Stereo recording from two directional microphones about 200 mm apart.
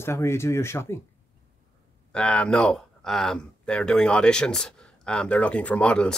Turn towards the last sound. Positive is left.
turn(degrees=5)  # may be behind; listen again after turning